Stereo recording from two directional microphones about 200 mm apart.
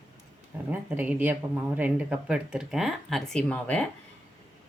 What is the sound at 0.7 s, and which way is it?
Speech, 10° right (ahead or behind).